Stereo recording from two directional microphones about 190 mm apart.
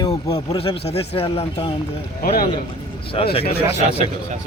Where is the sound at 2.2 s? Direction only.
50° left (ahead or behind).